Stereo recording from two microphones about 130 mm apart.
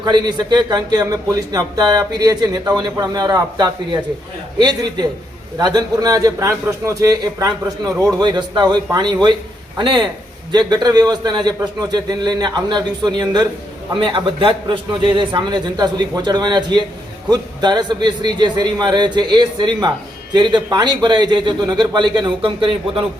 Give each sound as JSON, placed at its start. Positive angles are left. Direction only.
{"t": 0.0, "sound": "a man's voice", "side_deg": -35}